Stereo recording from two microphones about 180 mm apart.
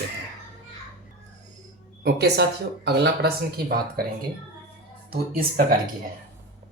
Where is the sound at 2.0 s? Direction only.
65° right (ahead or behind).